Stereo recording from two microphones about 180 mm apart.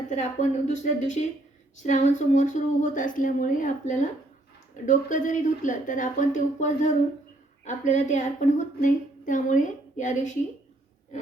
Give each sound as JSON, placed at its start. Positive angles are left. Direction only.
{"t": 0.1, "sound": "a woman's voice", "side_deg": 40}